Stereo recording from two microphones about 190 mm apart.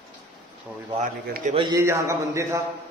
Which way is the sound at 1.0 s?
45° right (ahead or behind).